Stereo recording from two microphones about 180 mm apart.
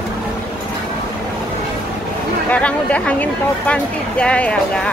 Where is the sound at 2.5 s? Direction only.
5° left (ahead or behind).